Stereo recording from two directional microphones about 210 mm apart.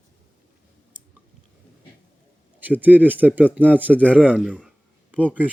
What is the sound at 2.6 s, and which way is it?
Speech, 10° right (ahead or behind).